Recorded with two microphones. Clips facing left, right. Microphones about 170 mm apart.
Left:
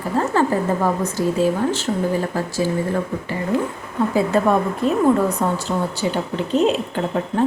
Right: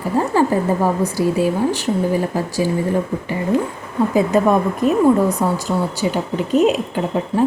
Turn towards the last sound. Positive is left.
turn(degrees=-15)  # may be behind; listen again after turning